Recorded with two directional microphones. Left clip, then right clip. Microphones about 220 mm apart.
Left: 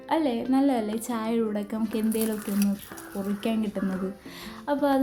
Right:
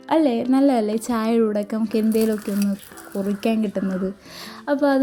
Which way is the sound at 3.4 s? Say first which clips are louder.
Right 6 dB; 25° right (ahead or behind).